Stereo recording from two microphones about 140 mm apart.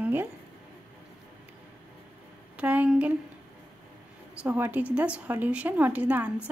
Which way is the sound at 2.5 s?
10° right (ahead or behind).